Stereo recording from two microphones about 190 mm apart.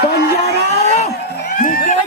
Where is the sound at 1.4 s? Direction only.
45° left (ahead or behind).